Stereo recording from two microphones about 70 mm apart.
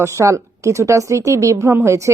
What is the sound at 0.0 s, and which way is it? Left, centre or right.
Speech, right.